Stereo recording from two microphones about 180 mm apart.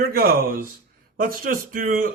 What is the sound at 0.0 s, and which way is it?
A man's voice, 60° right (ahead or behind).